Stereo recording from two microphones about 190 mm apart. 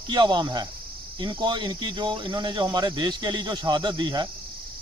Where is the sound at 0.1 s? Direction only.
25° right (ahead or behind).